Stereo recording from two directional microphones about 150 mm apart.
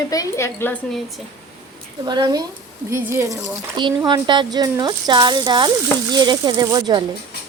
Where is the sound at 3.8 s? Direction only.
30° right (ahead or behind).